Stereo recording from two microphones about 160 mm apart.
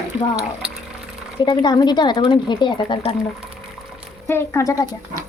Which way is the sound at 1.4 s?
25° left (ahead or behind).